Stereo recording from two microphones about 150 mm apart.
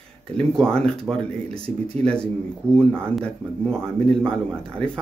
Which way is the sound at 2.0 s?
5° left (ahead or behind).